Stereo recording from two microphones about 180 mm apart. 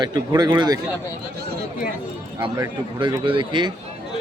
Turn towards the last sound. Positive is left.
turn(degrees=-25)  # may be behind; listen again after turning